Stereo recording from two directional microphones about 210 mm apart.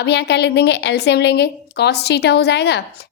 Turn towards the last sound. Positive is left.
turn(degrees=55)  # may be behind; listen again after turning